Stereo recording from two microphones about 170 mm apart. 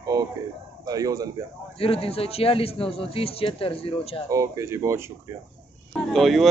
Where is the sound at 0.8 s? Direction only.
20° right (ahead or behind).